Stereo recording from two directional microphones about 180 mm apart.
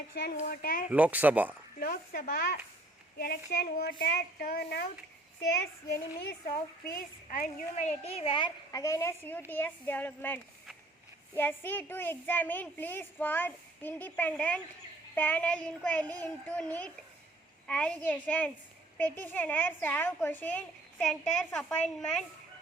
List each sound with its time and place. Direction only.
0.1 s speech: 60° left (ahead or behind)
0.9 s speech: 10° right (ahead or behind)
1.8 s a woman's voice: 55° left (ahead or behind)
6.9 s a woman's voice: 45° left (ahead or behind); by 8.4 s 30° left (ahead or behind)
8.7 s a woman's voice: 20° left (ahead or behind)